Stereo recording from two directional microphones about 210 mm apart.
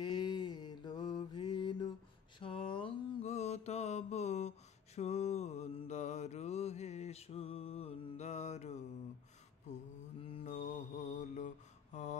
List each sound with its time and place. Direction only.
0.0 s mantra: 20° left (ahead or behind)
10.2 s mantra: 30° left (ahead or behind)